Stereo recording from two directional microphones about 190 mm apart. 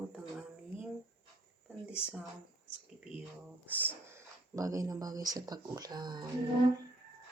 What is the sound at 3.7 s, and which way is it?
Speech, 10° right (ahead or behind).